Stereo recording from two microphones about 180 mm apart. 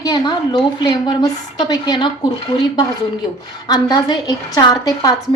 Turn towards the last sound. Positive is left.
turn(degrees=20)  # may be behind; listen again after turning